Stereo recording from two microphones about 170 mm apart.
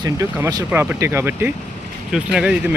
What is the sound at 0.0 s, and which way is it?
Speech, 15° right (ahead or behind).